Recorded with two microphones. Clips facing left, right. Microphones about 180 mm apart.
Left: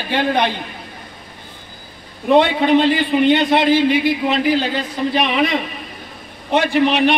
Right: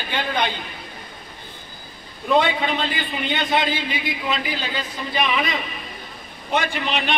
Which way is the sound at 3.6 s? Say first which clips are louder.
Left 11 dB; 70° left (ahead or behind).